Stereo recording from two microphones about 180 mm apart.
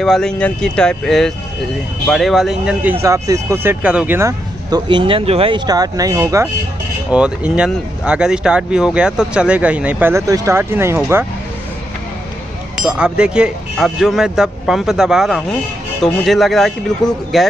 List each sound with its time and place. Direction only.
0.0 s speech: 5° left (ahead or behind); by 6.5 s 15° right (ahead or behind)
7.1 s speech: 5° right (ahead or behind)
12.8 s speech: 5° right (ahead or behind)